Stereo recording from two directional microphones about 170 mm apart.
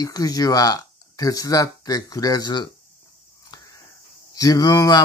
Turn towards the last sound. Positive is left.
turn(degrees=25)  # may be behind; listen again after turning